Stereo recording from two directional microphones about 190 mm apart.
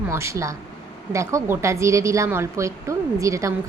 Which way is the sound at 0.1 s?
15° right (ahead or behind).